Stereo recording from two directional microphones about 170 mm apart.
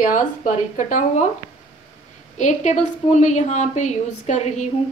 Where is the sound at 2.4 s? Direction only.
45° left (ahead or behind).